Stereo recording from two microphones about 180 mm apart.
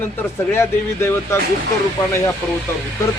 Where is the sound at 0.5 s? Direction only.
15° left (ahead or behind).